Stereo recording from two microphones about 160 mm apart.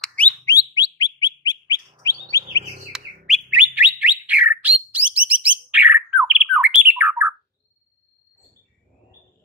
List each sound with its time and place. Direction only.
0.0 s a sound: 10° left (ahead or behind)
0.5 s bird: 25° left (ahead or behind)
2.9 s bird: 5° right (ahead or behind)